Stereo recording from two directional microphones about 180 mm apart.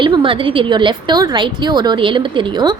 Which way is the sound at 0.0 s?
25° right (ahead or behind).